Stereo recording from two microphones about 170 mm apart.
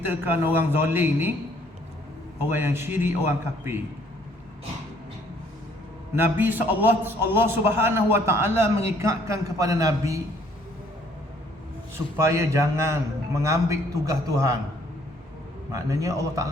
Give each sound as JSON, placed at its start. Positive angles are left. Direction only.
{"t": 0.1, "sound": "a man's voice", "side_deg": -10}
{"t": 2.4, "sound": "a man's voice", "side_deg": -15}
{"t": 6.1, "sound": "a man's voice", "side_deg": -10}
{"t": 12.1, "sound": "a man's voice", "side_deg": -15}
{"t": 15.7, "sound": "a man's voice", "side_deg": -20}